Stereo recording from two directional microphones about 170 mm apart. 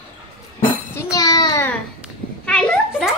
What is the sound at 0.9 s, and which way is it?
Child singing, 20° left (ahead or behind).